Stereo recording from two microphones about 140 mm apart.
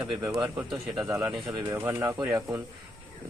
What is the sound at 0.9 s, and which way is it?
Speech, 25° right (ahead or behind).